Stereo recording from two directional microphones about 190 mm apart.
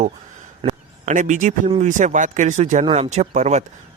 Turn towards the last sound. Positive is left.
turn(degrees=-35)  # may be behind; listen again after turning